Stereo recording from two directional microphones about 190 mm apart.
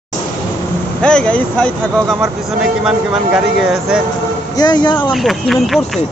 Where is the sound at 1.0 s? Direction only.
5° left (ahead or behind).